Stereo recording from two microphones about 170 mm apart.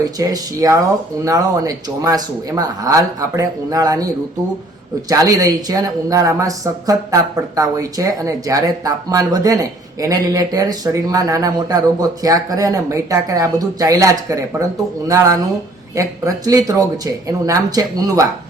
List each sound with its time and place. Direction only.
0.0 s speech: 20° right (ahead or behind)